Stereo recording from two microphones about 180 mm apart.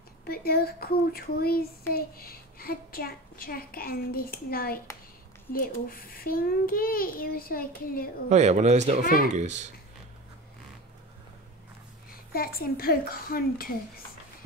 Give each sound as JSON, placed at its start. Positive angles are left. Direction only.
{"t": 0.2, "sound": "a child's voice", "side_deg": 60}
{"t": 8.3, "sound": "speech", "side_deg": -40}
{"t": 12.3, "sound": "speech", "side_deg": 55}